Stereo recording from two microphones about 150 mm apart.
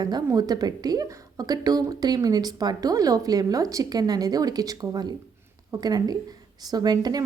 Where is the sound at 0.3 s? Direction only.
25° right (ahead or behind).